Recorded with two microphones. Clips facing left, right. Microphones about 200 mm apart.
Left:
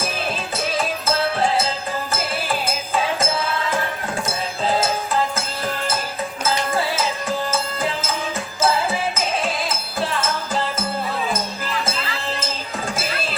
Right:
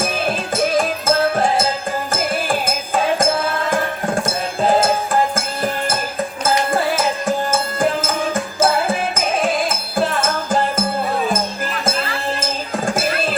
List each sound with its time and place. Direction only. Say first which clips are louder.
0.5 s music: right 7 dB; 50° right (ahead or behind)
4.6 s music: right 6 dB; 50° right (ahead or behind)
6.9 s music: right 4 dB; 50° right (ahead or behind)
12.9 s a sound: right 8 dB; 50° right (ahead or behind)